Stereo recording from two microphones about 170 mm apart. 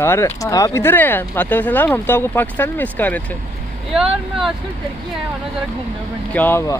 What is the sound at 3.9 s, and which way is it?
Speech, 5° right (ahead or behind).